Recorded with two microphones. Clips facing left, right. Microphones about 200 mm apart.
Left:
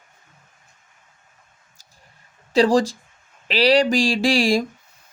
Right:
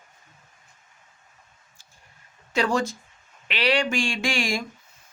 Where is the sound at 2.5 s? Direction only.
35° left (ahead or behind).